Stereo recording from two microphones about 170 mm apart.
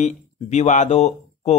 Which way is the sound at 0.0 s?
45° left (ahead or behind).